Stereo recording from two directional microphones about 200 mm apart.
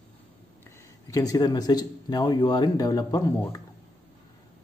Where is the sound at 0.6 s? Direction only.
15° left (ahead or behind).